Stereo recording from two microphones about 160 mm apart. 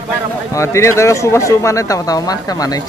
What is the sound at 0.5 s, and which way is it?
Speech, 20° left (ahead or behind).